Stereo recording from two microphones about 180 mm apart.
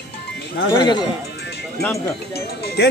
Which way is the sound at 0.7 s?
25° left (ahead or behind).